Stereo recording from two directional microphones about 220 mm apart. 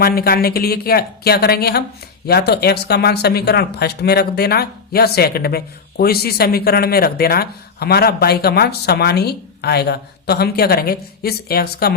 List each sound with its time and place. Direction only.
0.0 s speech: 45° left (ahead or behind)